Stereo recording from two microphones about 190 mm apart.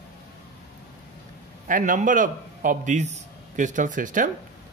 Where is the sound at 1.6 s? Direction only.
45° right (ahead or behind).